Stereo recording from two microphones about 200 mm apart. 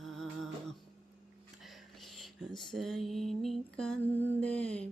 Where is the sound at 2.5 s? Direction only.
25° left (ahead or behind).